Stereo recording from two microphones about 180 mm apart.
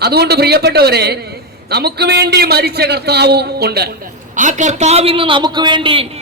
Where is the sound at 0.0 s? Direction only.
65° right (ahead or behind).